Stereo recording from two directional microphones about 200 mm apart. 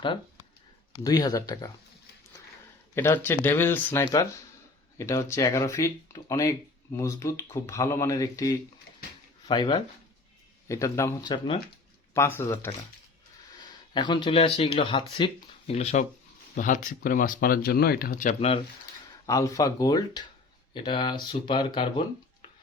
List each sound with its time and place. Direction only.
0.9 s speech: 20° left (ahead or behind)
2.9 s speech: 10° left (ahead or behind)
12.1 s speech: 15° left (ahead or behind)
13.9 s speech: 25° left (ahead or behind)
19.2 s speech: 15° left (ahead or behind)